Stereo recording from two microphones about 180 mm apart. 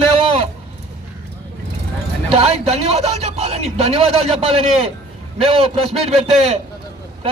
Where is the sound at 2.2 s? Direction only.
35° right (ahead or behind).